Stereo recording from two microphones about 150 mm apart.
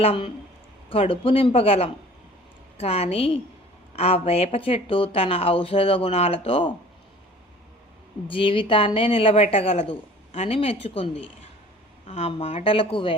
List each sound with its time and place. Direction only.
0.0 s speech: 40° left (ahead or behind)
8.3 s speech: 35° left (ahead or behind)